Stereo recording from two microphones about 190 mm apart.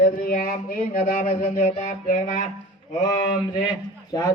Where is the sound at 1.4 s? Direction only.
35° left (ahead or behind).